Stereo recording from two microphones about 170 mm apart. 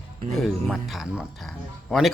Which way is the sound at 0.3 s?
Centre (ahead or behind).